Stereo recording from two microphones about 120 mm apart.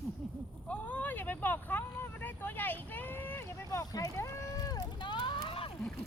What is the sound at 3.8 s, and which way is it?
Rowboat, 30° left (ahead or behind).